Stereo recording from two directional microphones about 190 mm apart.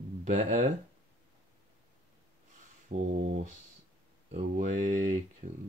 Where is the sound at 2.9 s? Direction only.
40° right (ahead or behind).